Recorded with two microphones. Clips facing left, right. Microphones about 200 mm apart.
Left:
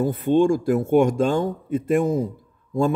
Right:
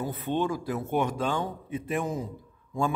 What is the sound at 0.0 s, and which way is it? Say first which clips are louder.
Speech: left 10 dB; 45° left (ahead or behind).